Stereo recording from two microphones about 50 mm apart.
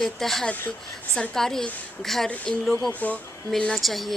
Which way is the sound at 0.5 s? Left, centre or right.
Left.